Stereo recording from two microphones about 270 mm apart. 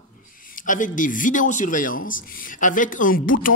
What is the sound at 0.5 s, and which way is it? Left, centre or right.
Speech, left.